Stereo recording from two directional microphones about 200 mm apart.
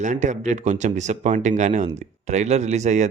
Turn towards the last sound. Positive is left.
turn(degrees=-35)  # may be behind; listen again after turning